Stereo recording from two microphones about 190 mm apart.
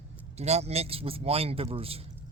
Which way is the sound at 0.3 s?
35° right (ahead or behind).